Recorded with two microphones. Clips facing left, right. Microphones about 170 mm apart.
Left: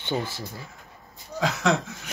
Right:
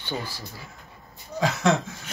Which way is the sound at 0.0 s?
25° left (ahead or behind).